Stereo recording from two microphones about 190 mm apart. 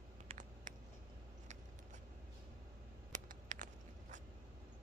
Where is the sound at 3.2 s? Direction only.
40° right (ahead or behind).